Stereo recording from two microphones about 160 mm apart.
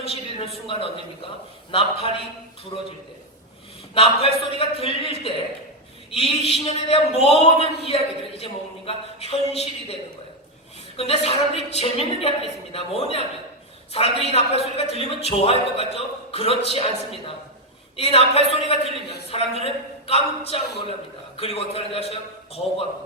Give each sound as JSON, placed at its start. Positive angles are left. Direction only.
{"t": 0.0, "sound": "a woman's voice", "side_deg": 40}
{"t": 3.9, "sound": "a man's voice", "side_deg": 35}
{"t": 6.1, "sound": "a man's voice", "side_deg": 40}